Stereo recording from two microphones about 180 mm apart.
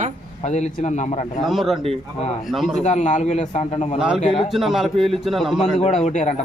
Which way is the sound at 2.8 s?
40° left (ahead or behind).